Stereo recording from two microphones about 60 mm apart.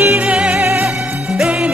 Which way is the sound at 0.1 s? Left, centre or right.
Centre.